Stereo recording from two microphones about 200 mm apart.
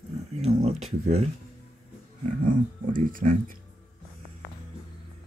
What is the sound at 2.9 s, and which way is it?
Speech, 45° right (ahead or behind).